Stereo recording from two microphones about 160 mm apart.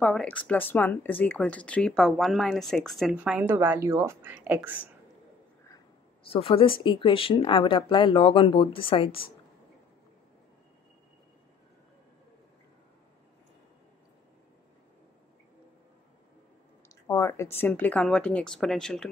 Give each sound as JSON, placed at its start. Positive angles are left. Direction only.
{"t": 0.0, "sound": "speech", "side_deg": 5}
{"t": 6.3, "sound": "speech", "side_deg": 35}
{"t": 16.9, "sound": "speech", "side_deg": 20}